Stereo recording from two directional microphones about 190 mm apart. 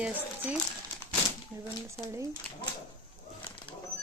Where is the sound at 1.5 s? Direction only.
10° right (ahead or behind).